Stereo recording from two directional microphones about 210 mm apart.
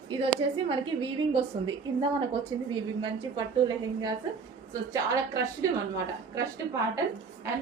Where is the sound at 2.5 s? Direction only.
20° right (ahead or behind).